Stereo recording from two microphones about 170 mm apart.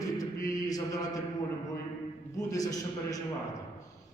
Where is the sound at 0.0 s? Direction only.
20° left (ahead or behind).